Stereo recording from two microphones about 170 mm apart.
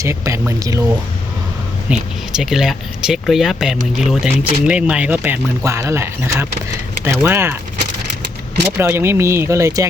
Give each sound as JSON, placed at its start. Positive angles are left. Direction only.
{"t": 0.0, "sound": "speech", "side_deg": -15}
{"t": 1.9, "sound": "speech", "side_deg": -5}
{"t": 8.8, "sound": "speech", "side_deg": -15}